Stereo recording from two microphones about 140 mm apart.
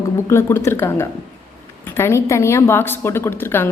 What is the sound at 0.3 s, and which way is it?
A woman's voice, 20° left (ahead or behind).